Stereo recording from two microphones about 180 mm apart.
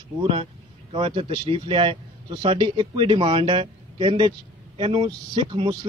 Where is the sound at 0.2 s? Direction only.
30° right (ahead or behind).